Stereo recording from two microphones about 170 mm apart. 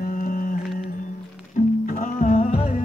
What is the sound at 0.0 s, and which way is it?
Music, 55° left (ahead or behind).